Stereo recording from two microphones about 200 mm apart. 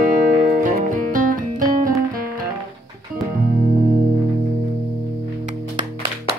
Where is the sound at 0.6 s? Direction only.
40° right (ahead or behind).